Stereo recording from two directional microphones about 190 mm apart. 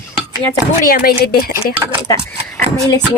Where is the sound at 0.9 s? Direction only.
55° left (ahead or behind).